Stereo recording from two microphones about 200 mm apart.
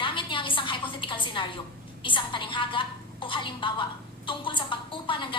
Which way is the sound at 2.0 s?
25° left (ahead or behind).